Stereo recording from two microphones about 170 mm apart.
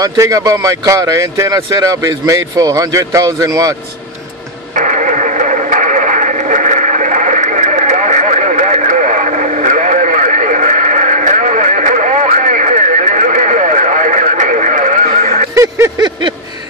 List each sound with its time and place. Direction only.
0.0 s speech: 20° right (ahead or behind)
4.7 s radio: 50° right (ahead or behind)
15.5 s a sound: 20° right (ahead or behind)